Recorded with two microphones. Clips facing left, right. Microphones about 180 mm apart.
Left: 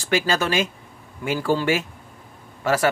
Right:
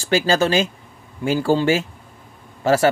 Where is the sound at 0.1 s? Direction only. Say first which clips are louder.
Right 4 dB; 30° right (ahead or behind).